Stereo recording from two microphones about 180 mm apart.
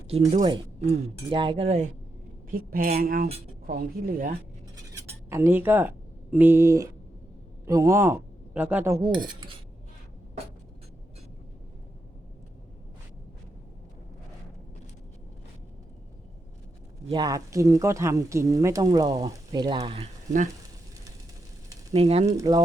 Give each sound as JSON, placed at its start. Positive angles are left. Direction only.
{"t": 0.8, "sound": "speech", "side_deg": -35}
{"t": 2.5, "sound": "a woman's voice", "side_deg": -55}
{"t": 4.9, "sound": "a man's voice", "side_deg": -15}
{"t": 9.0, "sound": "speech", "side_deg": -25}
{"t": 17.1, "sound": "speech", "side_deg": -20}
{"t": 19.8, "sound": "speech", "side_deg": -35}
{"t": 21.9, "sound": "speech", "side_deg": -35}
{"t": 22.4, "sound": "speech", "side_deg": -20}